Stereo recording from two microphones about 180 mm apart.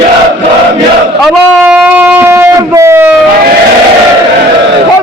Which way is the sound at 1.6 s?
10° right (ahead or behind).